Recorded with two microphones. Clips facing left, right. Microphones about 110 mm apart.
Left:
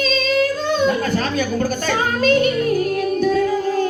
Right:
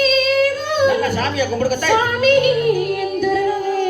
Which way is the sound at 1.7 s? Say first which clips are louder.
Right 4 dB; 35° left (ahead or behind).